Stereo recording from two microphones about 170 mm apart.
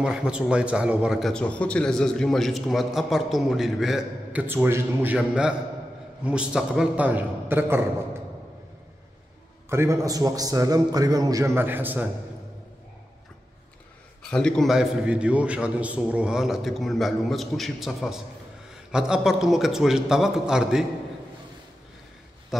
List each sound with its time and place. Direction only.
0.0 s a man's voice: 5° right (ahead or behind)
9.7 s a man's voice: 15° right (ahead or behind)
14.2 s a man's voice: 5° left (ahead or behind)
22.5 s speech: centre (ahead or behind)